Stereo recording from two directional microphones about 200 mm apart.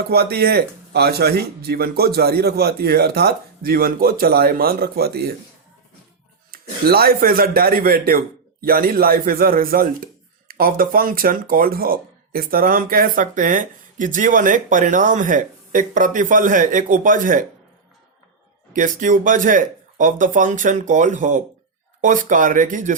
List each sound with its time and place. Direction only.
0.1 s speech: 50° right (ahead or behind)
6.5 s speech: 50° right (ahead or behind)
18.7 s speech: 40° right (ahead or behind)